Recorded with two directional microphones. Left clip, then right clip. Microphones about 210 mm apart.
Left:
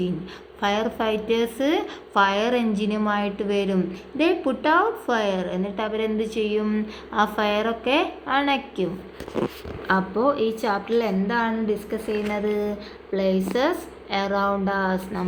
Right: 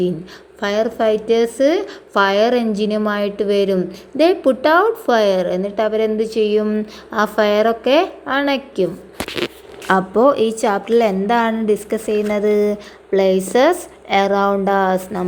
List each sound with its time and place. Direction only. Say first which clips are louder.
0.6 s a woman's voice: right 6 dB; 25° right (ahead or behind)